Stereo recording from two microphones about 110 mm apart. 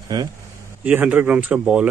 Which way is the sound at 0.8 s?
15° right (ahead or behind).